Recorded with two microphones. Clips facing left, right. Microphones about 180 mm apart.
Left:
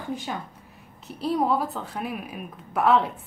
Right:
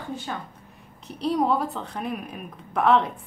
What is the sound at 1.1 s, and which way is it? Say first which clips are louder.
A woman's voice: right 1 dB; centre (ahead or behind).